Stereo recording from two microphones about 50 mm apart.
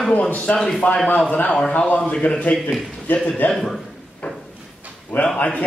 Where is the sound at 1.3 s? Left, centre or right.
Left.